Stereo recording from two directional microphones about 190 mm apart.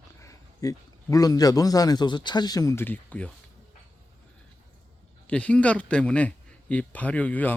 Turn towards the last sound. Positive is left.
turn(degrees=10)  # may be behind; listen again after turning